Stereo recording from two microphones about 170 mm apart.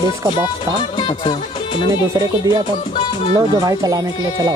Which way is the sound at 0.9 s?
30° left (ahead or behind).